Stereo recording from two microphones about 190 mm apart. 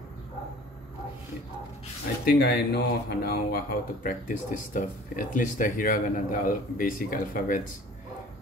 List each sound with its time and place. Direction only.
2.2 s speech: 55° left (ahead or behind)